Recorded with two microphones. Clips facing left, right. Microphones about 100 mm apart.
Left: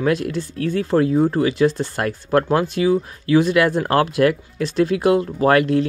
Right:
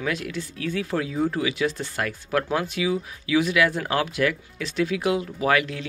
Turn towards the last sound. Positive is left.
turn(degrees=45)  # may be behind; listen again after turning